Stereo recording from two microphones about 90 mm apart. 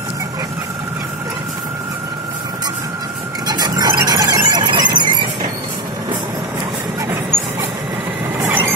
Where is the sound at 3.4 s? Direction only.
50° right (ahead or behind).